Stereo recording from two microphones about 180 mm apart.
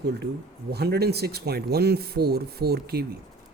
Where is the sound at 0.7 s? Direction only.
65° right (ahead or behind).